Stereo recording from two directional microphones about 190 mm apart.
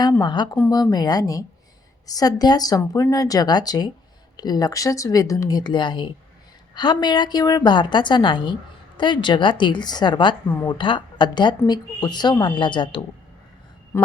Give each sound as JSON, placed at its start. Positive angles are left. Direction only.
{"t": 0.0, "sound": "speech", "side_deg": 20}
{"t": 10.5, "sound": "speech", "side_deg": 15}
{"t": 10.8, "sound": "speech", "side_deg": 25}